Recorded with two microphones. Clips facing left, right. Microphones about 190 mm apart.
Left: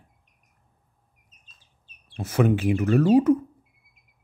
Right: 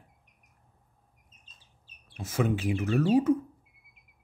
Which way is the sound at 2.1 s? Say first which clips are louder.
Left 6 dB; 65° left (ahead or behind).